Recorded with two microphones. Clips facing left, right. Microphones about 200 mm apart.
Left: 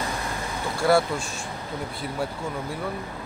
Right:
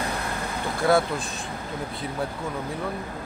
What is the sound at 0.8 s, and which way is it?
Speech, centre (ahead or behind).